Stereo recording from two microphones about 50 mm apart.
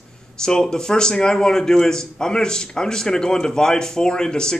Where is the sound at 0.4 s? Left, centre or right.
Centre.